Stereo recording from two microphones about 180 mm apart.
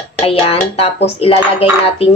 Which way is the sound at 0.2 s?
35° left (ahead or behind).